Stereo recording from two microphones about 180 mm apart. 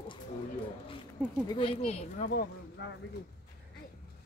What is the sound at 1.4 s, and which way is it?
Speech, 30° left (ahead or behind).